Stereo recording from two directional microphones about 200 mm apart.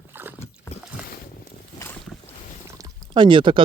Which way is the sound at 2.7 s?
20° right (ahead or behind).